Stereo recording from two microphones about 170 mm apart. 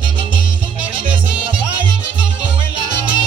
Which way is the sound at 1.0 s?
30° right (ahead or behind).